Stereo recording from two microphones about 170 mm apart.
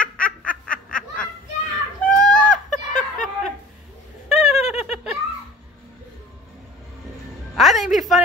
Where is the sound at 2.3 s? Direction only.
50° left (ahead or behind).